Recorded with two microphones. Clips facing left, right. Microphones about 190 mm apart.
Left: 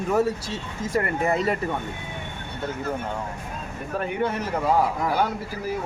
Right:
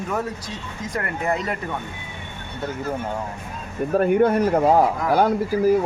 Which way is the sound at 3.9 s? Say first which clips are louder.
Right 9 dB; 45° right (ahead or behind).